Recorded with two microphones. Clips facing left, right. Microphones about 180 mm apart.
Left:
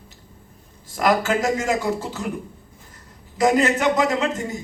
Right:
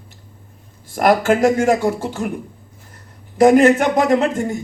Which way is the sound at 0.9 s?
50° right (ahead or behind).